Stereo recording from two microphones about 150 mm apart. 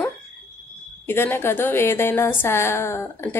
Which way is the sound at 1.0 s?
15° left (ahead or behind).